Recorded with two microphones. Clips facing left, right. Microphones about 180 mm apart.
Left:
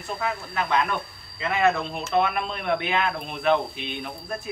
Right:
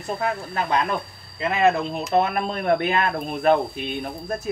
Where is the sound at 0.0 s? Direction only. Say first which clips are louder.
Right 4 dB; 40° right (ahead or behind).